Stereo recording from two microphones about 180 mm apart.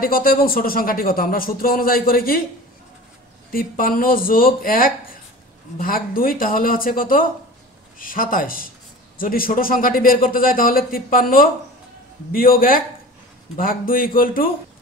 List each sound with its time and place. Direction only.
0.0 s speech: 55° left (ahead or behind)
3.5 s speech: 50° left (ahead or behind)